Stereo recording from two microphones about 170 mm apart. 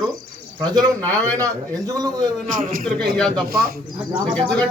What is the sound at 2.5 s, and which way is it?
Speech, 55° right (ahead or behind).